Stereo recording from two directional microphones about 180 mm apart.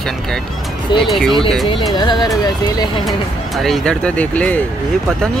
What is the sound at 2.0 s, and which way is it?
Speech, 25° left (ahead or behind).